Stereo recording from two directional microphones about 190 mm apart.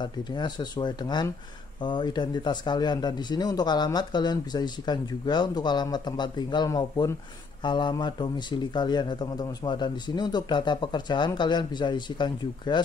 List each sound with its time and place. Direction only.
0.0 s speech: 25° left (ahead or behind)